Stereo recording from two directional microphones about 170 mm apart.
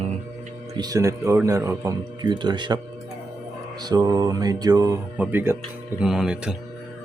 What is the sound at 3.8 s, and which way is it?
Speech, 25° right (ahead or behind).